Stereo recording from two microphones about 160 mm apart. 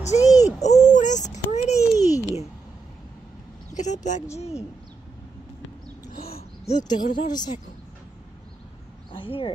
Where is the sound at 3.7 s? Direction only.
50° left (ahead or behind).